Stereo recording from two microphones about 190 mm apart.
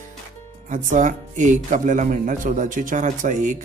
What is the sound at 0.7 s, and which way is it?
Speech, 40° right (ahead or behind).